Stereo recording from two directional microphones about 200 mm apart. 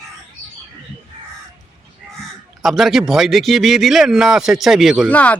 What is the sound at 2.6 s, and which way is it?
A man's voice, centre (ahead or behind).